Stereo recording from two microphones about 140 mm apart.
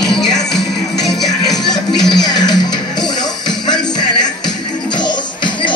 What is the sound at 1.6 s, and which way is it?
Music, 30° left (ahead or behind).